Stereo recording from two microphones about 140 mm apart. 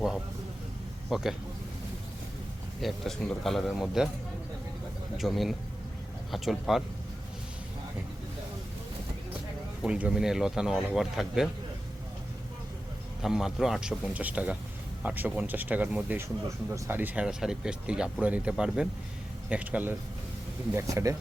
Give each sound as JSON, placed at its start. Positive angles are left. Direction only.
{"t": 1.1, "sound": "speech", "side_deg": -5}
{"t": 2.8, "sound": "speech", "side_deg": 0}
{"t": 5.1, "sound": "speech", "side_deg": 0}
{"t": 9.8, "sound": "speech", "side_deg": -5}
{"t": 13.2, "sound": "speech", "side_deg": -5}
{"t": 20.7, "sound": "speech", "side_deg": -25}